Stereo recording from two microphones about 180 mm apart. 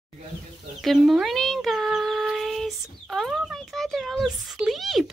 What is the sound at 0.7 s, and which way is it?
Speech, centre (ahead or behind).